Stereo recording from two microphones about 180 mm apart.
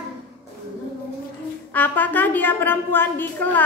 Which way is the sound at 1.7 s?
10° left (ahead or behind).